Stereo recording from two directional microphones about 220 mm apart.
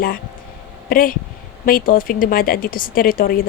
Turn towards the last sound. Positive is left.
turn(degrees=40)  # may be behind; listen again after turning